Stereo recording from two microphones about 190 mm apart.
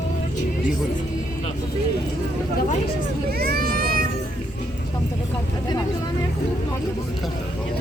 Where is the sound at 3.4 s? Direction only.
50° right (ahead or behind).